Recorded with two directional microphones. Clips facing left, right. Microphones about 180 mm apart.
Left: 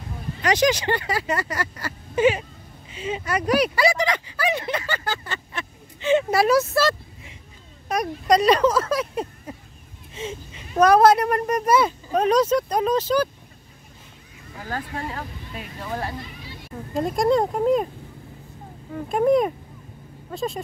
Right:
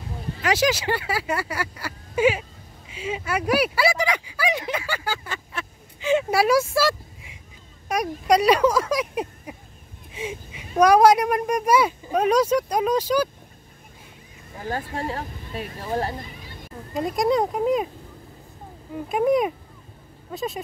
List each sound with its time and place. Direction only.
0.4 s speech: 5° right (ahead or behind)
14.6 s speech: 25° right (ahead or behind)
16.9 s speech: centre (ahead or behind)
18.9 s speech: 5° right (ahead or behind)